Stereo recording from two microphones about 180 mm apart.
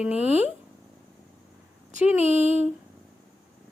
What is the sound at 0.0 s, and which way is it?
Speech, 5° right (ahead or behind).